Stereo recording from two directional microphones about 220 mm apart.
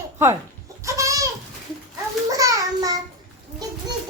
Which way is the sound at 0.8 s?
15° right (ahead or behind).